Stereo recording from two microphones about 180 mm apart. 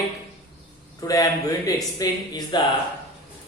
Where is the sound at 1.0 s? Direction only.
20° left (ahead or behind).